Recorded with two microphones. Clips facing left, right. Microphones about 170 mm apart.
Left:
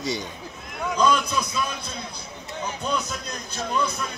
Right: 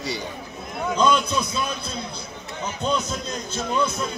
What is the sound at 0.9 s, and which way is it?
Speech, 25° right (ahead or behind).